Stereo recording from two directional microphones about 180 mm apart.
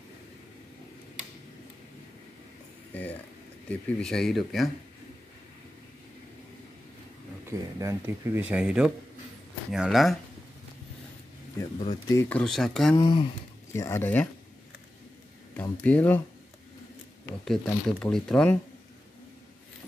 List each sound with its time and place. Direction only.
2.9 s a sound: 10° left (ahead or behind)
3.6 s speech: 5° left (ahead or behind)
7.4 s speech: 15° right (ahead or behind)
11.8 s speech: 25° left (ahead or behind)
12.2 s speech: 10° left (ahead or behind)
12.9 s speech: 25° left (ahead or behind)
13.7 s speech: 15° left (ahead or behind)
15.5 s speech: 10° left (ahead or behind)
17.5 s speech: 5° left (ahead or behind)